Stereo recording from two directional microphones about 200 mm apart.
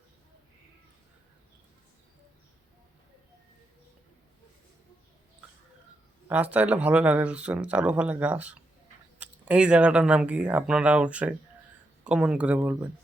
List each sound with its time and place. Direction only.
6.2 s speech: 5° right (ahead or behind)